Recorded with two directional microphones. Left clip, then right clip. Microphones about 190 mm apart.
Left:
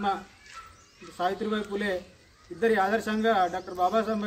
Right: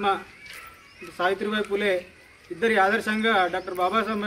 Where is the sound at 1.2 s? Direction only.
20° left (ahead or behind).